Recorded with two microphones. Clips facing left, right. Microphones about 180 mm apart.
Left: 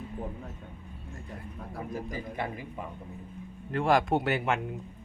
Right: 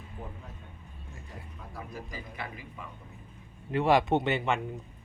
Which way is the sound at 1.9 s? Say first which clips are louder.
Left 6 dB; 50° left (ahead or behind).